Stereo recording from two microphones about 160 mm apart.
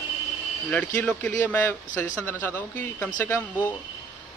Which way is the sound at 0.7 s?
10° left (ahead or behind).